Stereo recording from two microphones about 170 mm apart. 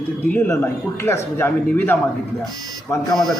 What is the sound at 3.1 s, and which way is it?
Speech, centre (ahead or behind).